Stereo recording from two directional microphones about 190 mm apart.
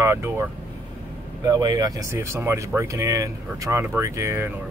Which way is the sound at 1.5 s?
20° right (ahead or behind).